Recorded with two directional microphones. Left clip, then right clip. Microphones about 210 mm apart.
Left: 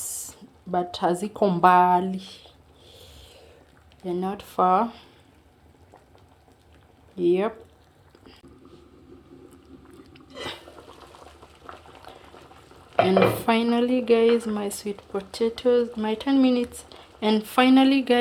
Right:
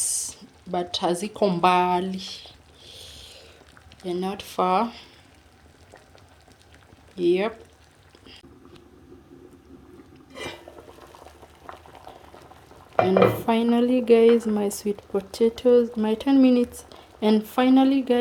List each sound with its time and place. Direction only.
0.0 s a sound: centre (ahead or behind)
4.0 s speech: centre (ahead or behind)
7.2 s speech: centre (ahead or behind)
12.1 s boiling: 10° right (ahead or behind)
12.9 s stir: 10° right (ahead or behind)
13.4 s speech: 10° right (ahead or behind)
17.5 s speech: 10° right (ahead or behind)